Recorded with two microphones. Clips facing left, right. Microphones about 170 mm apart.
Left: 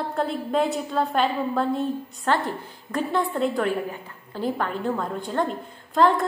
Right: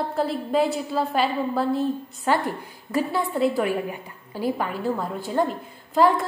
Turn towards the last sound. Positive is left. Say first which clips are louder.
# right 1 dB
turn(degrees=-5)  # may be behind; listen again after turning